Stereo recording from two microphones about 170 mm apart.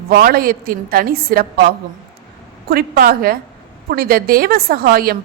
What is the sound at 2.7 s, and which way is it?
A woman's voice, 65° right (ahead or behind).